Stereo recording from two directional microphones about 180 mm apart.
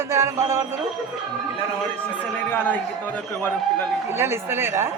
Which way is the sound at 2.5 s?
10° left (ahead or behind).